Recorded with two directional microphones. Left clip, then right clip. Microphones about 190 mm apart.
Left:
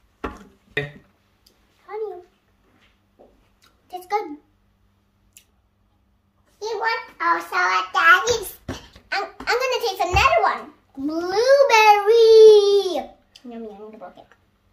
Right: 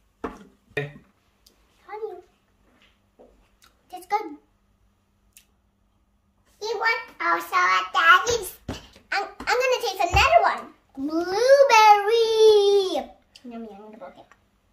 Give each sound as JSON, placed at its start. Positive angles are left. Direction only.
{"t": 1.9, "sound": "babbling", "side_deg": -5}
{"t": 3.8, "sound": "a sound", "side_deg": -5}
{"t": 6.6, "sound": "child singing", "side_deg": -35}
{"t": 9.1, "sound": "a child's voice", "side_deg": -5}